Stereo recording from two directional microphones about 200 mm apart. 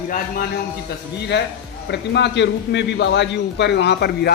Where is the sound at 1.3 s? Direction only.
60° left (ahead or behind).